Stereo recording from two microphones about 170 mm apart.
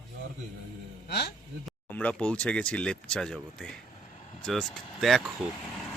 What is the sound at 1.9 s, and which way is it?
Speech, 10° left (ahead or behind).